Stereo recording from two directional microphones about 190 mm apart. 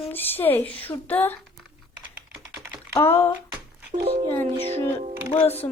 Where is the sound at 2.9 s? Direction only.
10° left (ahead or behind).